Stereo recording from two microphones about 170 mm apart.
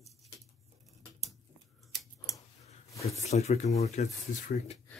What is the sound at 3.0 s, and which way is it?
Speech, 40° left (ahead or behind).